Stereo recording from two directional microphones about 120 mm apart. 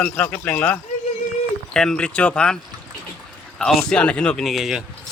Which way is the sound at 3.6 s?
5° left (ahead or behind).